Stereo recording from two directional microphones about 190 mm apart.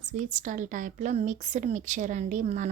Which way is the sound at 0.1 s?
40° right (ahead or behind).